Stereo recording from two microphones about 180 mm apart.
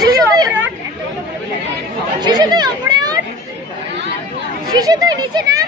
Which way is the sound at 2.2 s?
25° right (ahead or behind).